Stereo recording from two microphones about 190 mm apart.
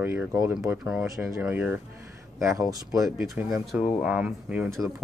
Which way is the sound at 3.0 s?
Centre (ahead or behind).